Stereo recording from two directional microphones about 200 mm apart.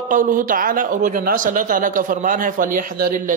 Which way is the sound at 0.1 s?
40° right (ahead or behind).